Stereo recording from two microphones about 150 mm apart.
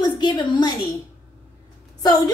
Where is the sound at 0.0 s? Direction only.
30° left (ahead or behind).